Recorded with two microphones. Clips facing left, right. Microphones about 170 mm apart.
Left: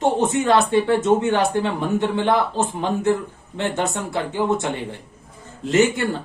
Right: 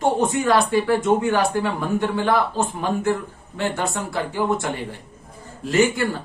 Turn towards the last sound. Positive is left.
turn(degrees=20)  # may be behind; listen again after turning